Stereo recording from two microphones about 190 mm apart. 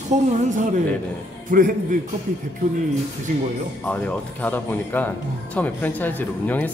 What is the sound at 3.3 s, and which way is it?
Speech, 40° right (ahead or behind).